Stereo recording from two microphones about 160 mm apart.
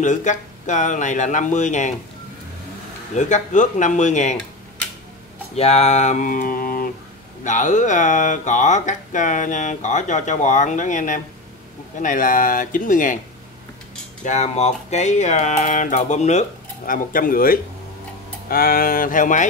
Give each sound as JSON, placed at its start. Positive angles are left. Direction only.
{"t": 0.0, "sound": "speech", "side_deg": 50}
{"t": 3.2, "sound": "speech", "side_deg": 50}
{"t": 5.6, "sound": "speech", "side_deg": 40}
{"t": 7.4, "sound": "speech", "side_deg": 50}
{"t": 14.2, "sound": "speech", "side_deg": 45}